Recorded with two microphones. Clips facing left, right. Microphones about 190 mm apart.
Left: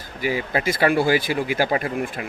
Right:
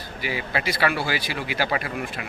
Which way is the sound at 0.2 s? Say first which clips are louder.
Left 5 dB; 45° left (ahead or behind).